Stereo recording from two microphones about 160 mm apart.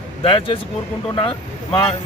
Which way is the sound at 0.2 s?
35° left (ahead or behind).